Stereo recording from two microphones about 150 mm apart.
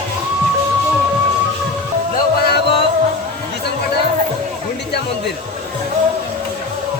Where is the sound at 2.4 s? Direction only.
90° left.